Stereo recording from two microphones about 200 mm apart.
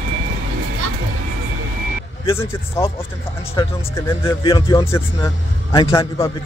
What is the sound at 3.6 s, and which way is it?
Speech, 20° left (ahead or behind).